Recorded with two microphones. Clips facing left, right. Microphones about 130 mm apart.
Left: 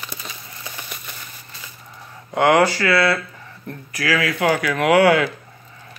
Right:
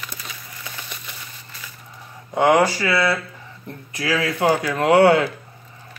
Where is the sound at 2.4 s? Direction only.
15° right (ahead or behind).